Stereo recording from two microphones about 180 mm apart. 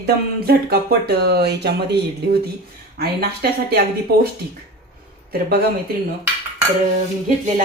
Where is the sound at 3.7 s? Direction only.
65° right (ahead or behind).